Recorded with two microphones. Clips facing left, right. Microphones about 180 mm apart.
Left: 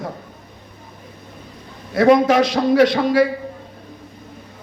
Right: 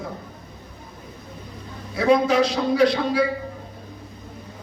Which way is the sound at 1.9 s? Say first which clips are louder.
Left 5 dB; 75° left (ahead or behind).